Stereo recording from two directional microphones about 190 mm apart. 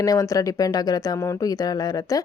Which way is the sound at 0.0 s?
20° left (ahead or behind).